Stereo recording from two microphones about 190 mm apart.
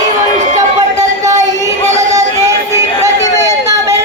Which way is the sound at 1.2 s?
15° right (ahead or behind).